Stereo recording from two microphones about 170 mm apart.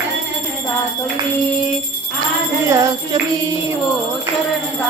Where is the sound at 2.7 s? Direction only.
25° right (ahead or behind).